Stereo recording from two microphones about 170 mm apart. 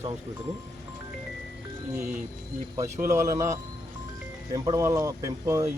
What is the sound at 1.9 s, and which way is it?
A man's voice, 10° right (ahead or behind).